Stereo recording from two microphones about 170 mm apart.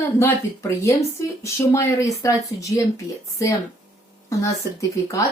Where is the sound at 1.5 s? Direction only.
15° left (ahead or behind).